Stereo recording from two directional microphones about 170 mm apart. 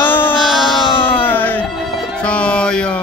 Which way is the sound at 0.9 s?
30° left (ahead or behind).